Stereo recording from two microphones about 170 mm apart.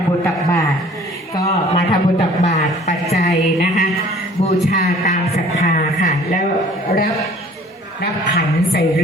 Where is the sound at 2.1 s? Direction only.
40° left (ahead or behind).